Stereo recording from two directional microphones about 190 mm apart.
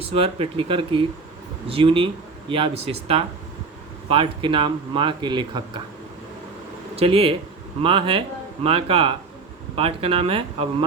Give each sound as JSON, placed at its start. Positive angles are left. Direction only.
{"t": 0.1, "sound": "speech", "side_deg": -30}
{"t": 7.0, "sound": "speech", "side_deg": -30}